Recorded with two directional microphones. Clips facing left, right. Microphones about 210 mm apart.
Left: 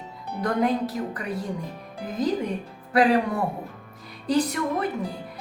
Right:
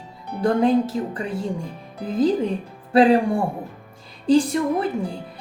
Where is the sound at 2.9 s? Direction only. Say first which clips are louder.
Right 5 dB; 30° right (ahead or behind).